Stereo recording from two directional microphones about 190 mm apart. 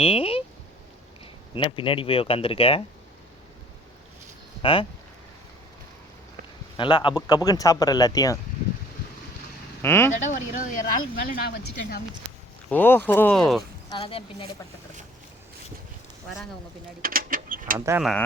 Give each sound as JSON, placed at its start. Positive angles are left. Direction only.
{"t": 0.0, "sound": "speech", "side_deg": 30}
{"t": 1.5, "sound": "speech", "side_deg": 25}
{"t": 4.6, "sound": "speech", "side_deg": 30}
{"t": 6.7, "sound": "speech", "side_deg": 25}
{"t": 9.8, "sound": "speech", "side_deg": 10}
{"t": 10.2, "sound": "speech", "side_deg": 40}
{"t": 12.7, "sound": "speech", "side_deg": 10}
{"t": 13.9, "sound": "speech", "side_deg": 30}
{"t": 17.0, "sound": "a sound", "side_deg": -50}
{"t": 17.7, "sound": "speech", "side_deg": -15}